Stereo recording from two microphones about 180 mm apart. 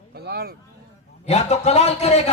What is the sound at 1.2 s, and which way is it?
A man's voice, 40° left (ahead or behind).